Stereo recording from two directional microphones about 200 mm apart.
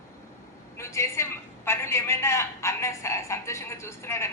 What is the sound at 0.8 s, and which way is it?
A woman's voice, 15° left (ahead or behind).